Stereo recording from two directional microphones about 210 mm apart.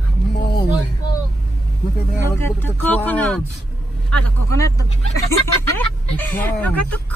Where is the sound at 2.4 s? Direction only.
10° left (ahead or behind).